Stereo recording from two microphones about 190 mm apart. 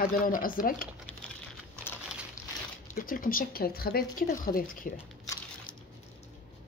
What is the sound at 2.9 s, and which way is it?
Speech, 45° left (ahead or behind).